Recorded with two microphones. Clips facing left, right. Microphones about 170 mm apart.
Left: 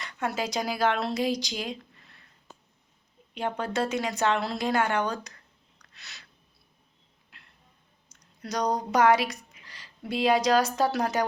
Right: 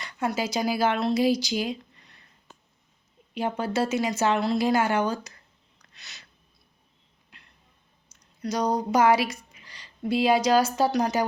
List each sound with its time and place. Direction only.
0.0 s speech: centre (ahead or behind)
3.3 s speech: 5° right (ahead or behind)
5.8 s a sound: centre (ahead or behind)
7.3 s music: centre (ahead or behind)
8.1 s speech: centre (ahead or behind)